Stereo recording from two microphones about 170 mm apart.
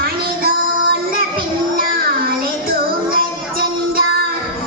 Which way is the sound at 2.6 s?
60° right (ahead or behind).